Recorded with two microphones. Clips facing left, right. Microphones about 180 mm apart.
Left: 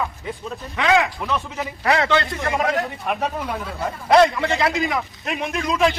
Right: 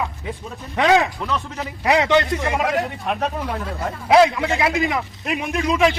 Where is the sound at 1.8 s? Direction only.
15° right (ahead or behind).